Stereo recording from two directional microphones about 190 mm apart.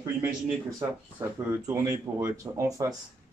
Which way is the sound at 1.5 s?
15° right (ahead or behind).